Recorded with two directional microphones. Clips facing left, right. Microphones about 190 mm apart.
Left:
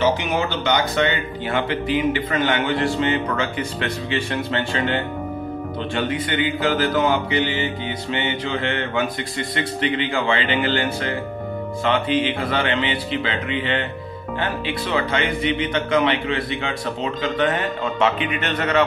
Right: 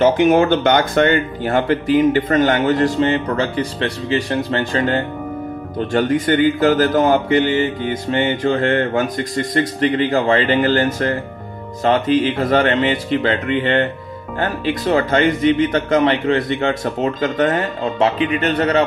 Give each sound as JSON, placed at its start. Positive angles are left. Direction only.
{"t": 0.0, "sound": "speech", "side_deg": -50}